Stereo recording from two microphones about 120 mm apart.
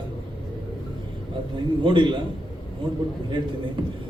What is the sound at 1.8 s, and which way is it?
Speech, 40° right (ahead or behind).